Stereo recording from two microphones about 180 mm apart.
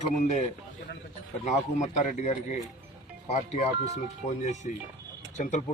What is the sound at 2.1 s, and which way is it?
Speech, 40° left (ahead or behind).